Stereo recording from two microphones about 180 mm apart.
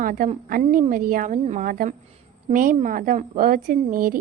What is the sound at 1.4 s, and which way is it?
Speech, 35° right (ahead or behind).